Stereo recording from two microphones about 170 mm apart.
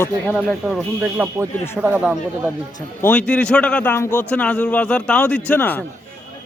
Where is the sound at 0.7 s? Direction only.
5° right (ahead or behind).